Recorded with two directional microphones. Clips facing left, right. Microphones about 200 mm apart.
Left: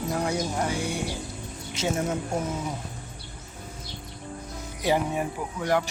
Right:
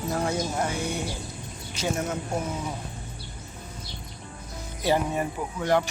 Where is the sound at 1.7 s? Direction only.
25° left (ahead or behind).